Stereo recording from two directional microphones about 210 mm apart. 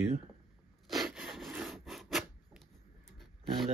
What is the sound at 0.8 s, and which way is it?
Rub, centre (ahead or behind).